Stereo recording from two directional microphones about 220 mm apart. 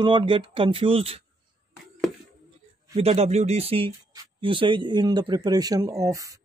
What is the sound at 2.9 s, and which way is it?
Speech, 30° right (ahead or behind).